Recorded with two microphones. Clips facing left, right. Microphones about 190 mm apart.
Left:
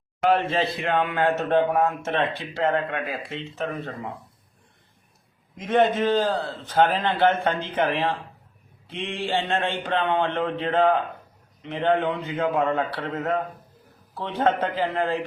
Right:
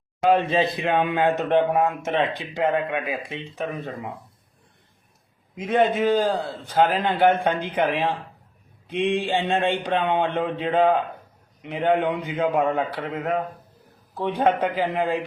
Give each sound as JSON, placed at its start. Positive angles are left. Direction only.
{"t": 0.2, "sound": "a man's voice", "side_deg": -15}
{"t": 5.5, "sound": "a man's voice", "side_deg": -10}